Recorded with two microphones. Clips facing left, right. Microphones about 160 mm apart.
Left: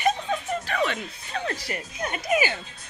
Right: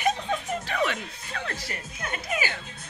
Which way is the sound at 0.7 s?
5° right (ahead or behind).